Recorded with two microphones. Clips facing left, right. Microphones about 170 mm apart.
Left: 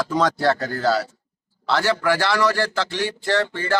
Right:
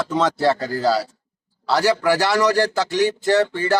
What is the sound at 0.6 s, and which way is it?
A man's voice, 30° right (ahead or behind).